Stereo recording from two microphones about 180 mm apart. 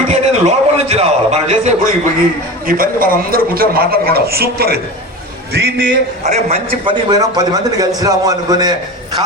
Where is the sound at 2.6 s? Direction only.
50° right (ahead or behind).